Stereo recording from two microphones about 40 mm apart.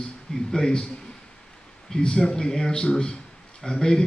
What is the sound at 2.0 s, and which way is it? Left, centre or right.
A man's voice, centre.